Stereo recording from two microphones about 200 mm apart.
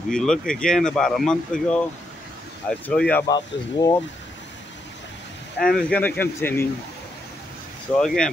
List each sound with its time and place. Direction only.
0.1 s speech: 5° left (ahead or behind)
3.3 s speech: 20° left (ahead or behind)
5.6 s speech: centre (ahead or behind)
7.9 s speech: 5° left (ahead or behind)